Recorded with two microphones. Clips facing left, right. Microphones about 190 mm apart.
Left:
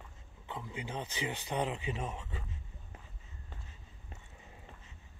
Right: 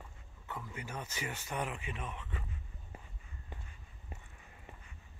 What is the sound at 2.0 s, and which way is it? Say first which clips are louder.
Speech: left 4 dB; 40° left (ahead or behind).